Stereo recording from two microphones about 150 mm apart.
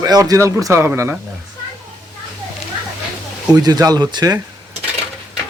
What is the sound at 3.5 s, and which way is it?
Speech, 25° right (ahead or behind).